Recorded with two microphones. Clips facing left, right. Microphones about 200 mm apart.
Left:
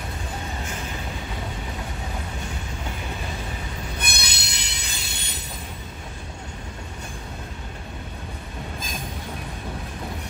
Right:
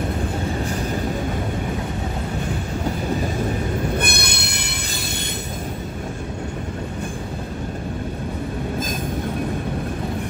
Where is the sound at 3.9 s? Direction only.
55° right (ahead or behind).